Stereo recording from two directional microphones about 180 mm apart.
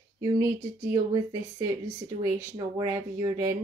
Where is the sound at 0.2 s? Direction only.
20° right (ahead or behind).